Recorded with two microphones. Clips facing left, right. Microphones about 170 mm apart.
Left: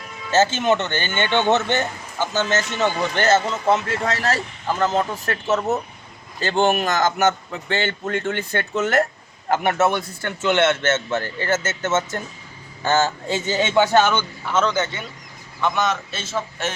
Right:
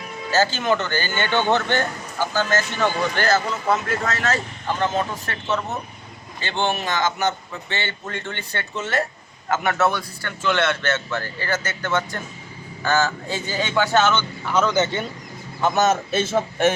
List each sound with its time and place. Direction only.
0.3 s a man's voice: 25° left (ahead or behind); by 9.0 s 50° left (ahead or behind)
9.5 s a man's voice: 25° left (ahead or behind)
14.4 s a man's voice: centre (ahead or behind)
15.6 s a man's voice: 40° right (ahead or behind)